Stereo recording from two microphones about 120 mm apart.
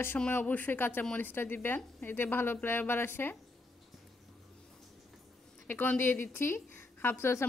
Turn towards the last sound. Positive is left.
turn(degrees=20)  # may be behind; listen again after turning